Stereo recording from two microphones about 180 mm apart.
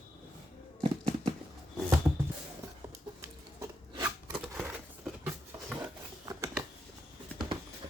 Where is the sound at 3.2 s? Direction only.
15° right (ahead or behind).